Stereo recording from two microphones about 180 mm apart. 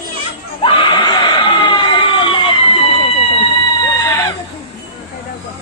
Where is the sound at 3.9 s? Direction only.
20° left (ahead or behind).